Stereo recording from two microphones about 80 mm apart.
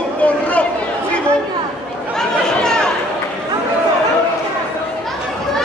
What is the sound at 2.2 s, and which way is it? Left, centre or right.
Chatter, centre.